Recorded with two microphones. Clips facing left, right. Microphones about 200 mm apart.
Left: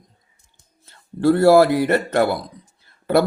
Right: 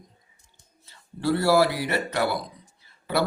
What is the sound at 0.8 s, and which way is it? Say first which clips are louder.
Speech: left 9 dB; 55° left (ahead or behind).